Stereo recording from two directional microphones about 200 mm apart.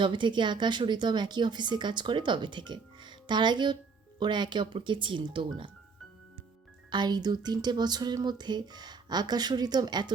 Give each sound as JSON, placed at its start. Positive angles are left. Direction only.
{"t": 0.0, "sound": "speech", "side_deg": -25}
{"t": 6.9, "sound": "speech", "side_deg": -20}